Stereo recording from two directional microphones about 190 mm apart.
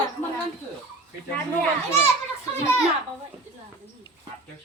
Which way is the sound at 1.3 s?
10° left (ahead or behind).